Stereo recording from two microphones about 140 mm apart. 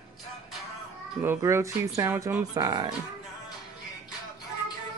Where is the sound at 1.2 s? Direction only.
15° right (ahead or behind).